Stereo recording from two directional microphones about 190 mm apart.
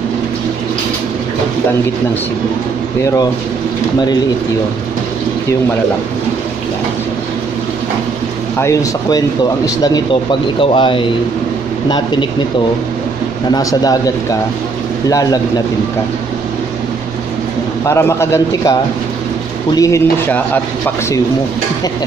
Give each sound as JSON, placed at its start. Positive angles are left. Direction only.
{"t": 8.5, "sound": "a man's voice", "side_deg": 15}
{"t": 13.5, "sound": "a man's voice", "side_deg": 20}
{"t": 17.8, "sound": "a man's voice", "side_deg": 15}